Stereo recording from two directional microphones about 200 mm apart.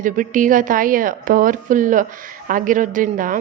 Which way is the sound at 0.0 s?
40° right (ahead or behind).